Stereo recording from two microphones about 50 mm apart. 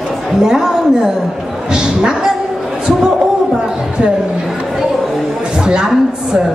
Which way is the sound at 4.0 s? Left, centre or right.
Right.